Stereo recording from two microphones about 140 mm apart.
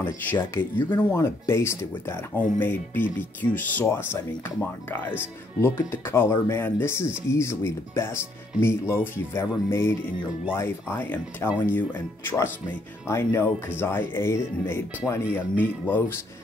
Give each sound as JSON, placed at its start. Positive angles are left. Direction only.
{"t": 0.0, "sound": "speech", "side_deg": 15}